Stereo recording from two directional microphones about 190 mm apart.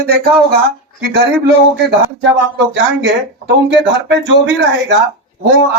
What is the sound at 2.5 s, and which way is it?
Speech, 65° right (ahead or behind).